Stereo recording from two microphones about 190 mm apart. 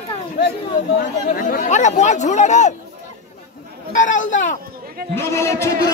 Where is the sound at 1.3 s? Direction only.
45° left (ahead or behind).